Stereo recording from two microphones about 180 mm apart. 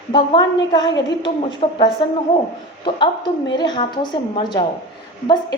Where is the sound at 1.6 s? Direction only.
35° left (ahead or behind).